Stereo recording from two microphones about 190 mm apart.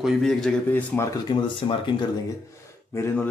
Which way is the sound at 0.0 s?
Centre (ahead or behind).